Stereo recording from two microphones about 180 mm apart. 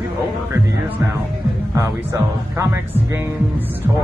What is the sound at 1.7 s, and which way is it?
Speech, 15° right (ahead or behind).